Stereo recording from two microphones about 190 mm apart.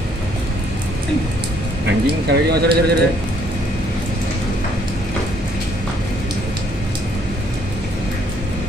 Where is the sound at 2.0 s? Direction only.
55° right (ahead or behind).